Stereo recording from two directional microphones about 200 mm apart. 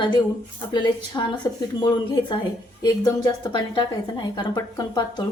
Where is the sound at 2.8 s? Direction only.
20° left (ahead or behind).